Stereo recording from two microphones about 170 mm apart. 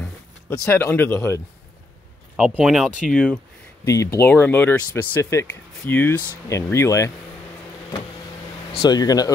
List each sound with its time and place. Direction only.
0.0 s speech: 10° left (ahead or behind)
2.3 s speech: 5° right (ahead or behind)
3.8 s speech: 20° left (ahead or behind)
8.8 s speech: 25° left (ahead or behind)